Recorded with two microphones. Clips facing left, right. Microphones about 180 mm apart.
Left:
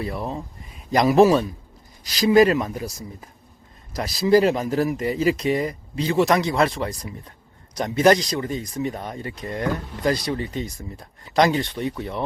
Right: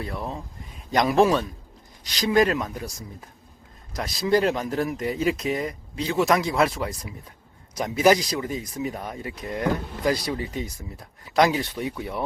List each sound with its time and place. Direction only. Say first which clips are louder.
0.0 s speech: left 4 dB; centre (ahead or behind)